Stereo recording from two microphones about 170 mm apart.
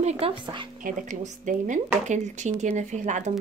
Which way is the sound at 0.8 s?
50° right (ahead or behind).